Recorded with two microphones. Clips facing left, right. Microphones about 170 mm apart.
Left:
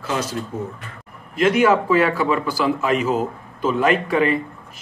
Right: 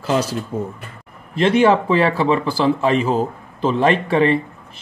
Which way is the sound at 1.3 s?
30° right (ahead or behind).